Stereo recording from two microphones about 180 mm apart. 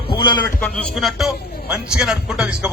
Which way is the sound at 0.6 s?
5° left (ahead or behind).